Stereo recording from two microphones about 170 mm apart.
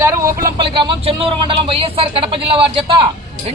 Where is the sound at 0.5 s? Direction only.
30° right (ahead or behind).